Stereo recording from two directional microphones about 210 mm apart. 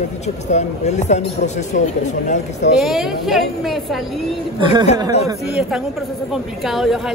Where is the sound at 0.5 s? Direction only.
35° left (ahead or behind).